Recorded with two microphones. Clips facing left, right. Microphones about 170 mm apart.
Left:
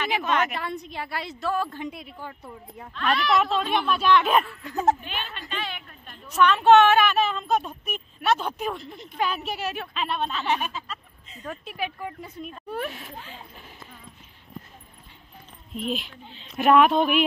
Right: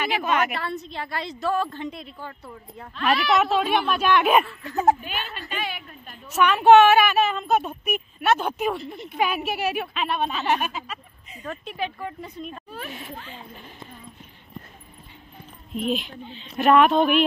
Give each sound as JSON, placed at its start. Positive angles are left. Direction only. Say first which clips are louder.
{"t": 0.2, "sound": "a woman's voice", "louder": "right 1 dB", "side_deg": -10}
{"t": 0.6, "sound": "a woman's voice", "louder": "right 1 dB", "side_deg": 15}
{"t": 2.9, "sound": "a woman's voice", "louder": "right 2 dB", "side_deg": -5}
{"t": 11.4, "sound": "a woman's voice", "louder": "right 2 dB", "side_deg": 5}
{"t": 12.6, "sound": "a sound", "louder": "left 6 dB", "side_deg": 60}
{"t": 12.9, "sound": "speech", "louder": "right 3 dB", "side_deg": 0}
{"t": 15.7, "sound": "speech", "louder": "right 4 dB", "side_deg": 0}